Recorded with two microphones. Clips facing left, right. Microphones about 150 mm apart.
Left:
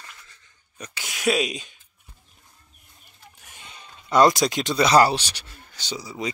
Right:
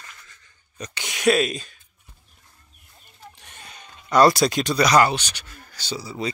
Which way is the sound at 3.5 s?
25° left (ahead or behind).